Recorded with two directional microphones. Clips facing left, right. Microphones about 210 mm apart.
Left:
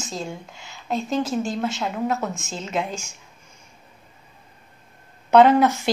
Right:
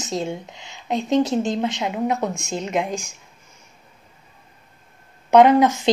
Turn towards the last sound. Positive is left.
turn(degrees=-10)  # may be behind; listen again after turning